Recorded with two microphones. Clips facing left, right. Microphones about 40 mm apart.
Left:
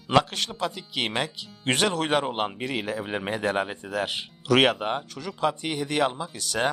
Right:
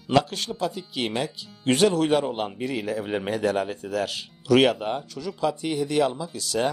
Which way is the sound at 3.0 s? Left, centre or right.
Centre.